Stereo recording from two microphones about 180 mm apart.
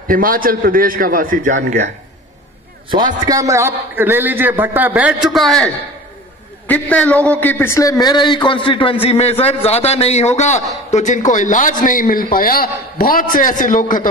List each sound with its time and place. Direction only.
0.1 s a man's voice: 50° right (ahead or behind)
3.3 s a man's voice: 20° right (ahead or behind); by 5.7 s centre (ahead or behind)
6.7 s a man's voice: 10° left (ahead or behind); by 14.0 s 45° left (ahead or behind)